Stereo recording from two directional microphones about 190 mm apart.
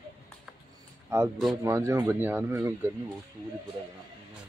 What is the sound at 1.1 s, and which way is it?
Speech, 15° right (ahead or behind).